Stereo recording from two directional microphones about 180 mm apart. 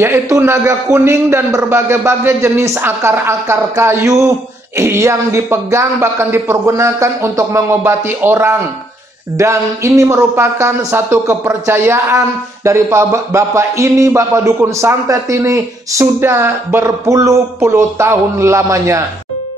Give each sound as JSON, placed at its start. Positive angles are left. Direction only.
{"t": 0.0, "sound": "a man's voice", "side_deg": -15}